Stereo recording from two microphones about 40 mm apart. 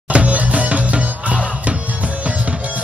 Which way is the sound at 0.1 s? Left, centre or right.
Right.